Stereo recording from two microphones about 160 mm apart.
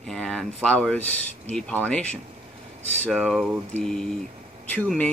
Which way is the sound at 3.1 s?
Centre (ahead or behind).